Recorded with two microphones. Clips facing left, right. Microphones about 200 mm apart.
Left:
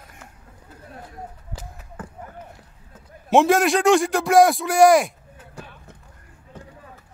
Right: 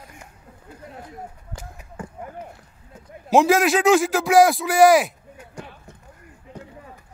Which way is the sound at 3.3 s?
Centre (ahead or behind).